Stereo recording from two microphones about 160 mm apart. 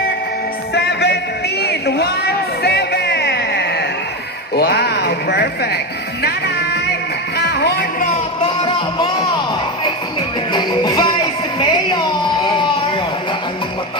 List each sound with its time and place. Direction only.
0.7 s a sound: 90° left
4.5 s speech: 85° left
6.2 s music: 90° left
8.4 s music: 30° left (ahead or behind)
10.5 s music: 25° left (ahead or behind)